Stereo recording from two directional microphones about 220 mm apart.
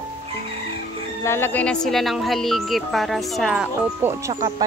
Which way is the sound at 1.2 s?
10° left (ahead or behind).